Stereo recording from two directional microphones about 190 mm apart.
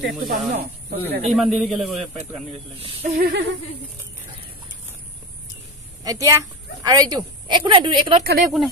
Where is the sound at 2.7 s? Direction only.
35° right (ahead or behind).